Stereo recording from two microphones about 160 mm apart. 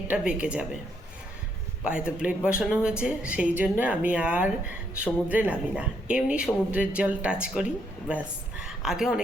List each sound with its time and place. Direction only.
0.1 s speech: 5° right (ahead or behind)
1.8 s speech: 5° right (ahead or behind)